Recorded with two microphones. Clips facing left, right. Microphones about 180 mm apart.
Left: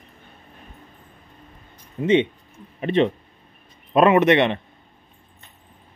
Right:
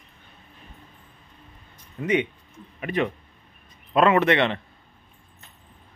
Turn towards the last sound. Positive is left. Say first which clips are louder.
# left 4 dB
turn(degrees=20)  # may be behind; listen again after turning